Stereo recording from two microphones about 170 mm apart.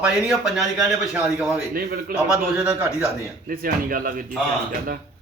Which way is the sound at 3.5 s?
55° right (ahead or behind).